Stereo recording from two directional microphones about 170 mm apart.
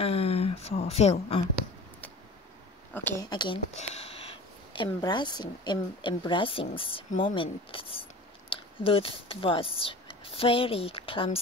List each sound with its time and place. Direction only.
0.0 s a sound: 35° left (ahead or behind)
2.9 s speech: 10° left (ahead or behind)
3.3 s speech: 25° left (ahead or behind)